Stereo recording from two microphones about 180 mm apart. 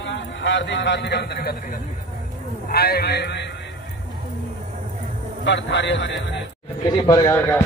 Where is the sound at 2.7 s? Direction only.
60° left (ahead or behind).